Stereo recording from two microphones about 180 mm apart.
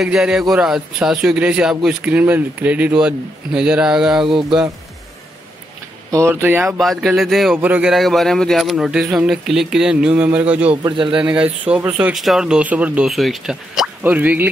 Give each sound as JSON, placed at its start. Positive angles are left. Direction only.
{"t": 0.0, "sound": "a man's voice", "side_deg": 0}
{"t": 6.1, "sound": "speech", "side_deg": -15}
{"t": 6.8, "sound": "a man's voice", "side_deg": 0}
{"t": 10.8, "sound": "a man's voice", "side_deg": -25}
{"t": 11.1, "sound": "a man's voice", "side_deg": -5}